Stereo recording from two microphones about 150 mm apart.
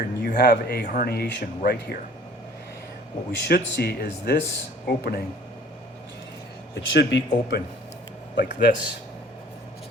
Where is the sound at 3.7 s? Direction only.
90° left.